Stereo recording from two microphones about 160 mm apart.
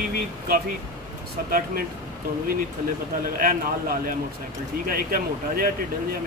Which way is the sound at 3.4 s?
60° right (ahead or behind).